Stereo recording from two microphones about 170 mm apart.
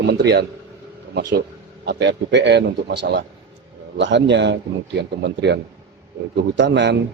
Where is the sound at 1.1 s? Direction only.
90° right.